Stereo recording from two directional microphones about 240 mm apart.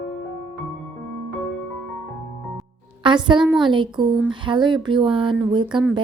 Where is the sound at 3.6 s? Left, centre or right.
Centre.